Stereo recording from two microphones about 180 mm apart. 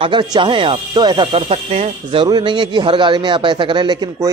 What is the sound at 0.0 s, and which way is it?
Speech, 25° right (ahead or behind).